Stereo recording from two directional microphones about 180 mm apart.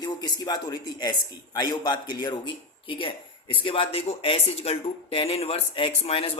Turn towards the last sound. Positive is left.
turn(degrees=30)  # may be behind; listen again after turning